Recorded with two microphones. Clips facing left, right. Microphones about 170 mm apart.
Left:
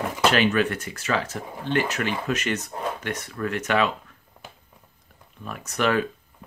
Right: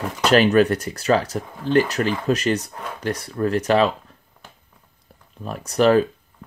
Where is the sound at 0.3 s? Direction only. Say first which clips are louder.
Right 9 dB; 40° right (ahead or behind).